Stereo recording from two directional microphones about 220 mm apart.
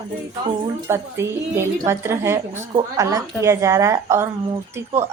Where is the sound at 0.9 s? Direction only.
10° right (ahead or behind).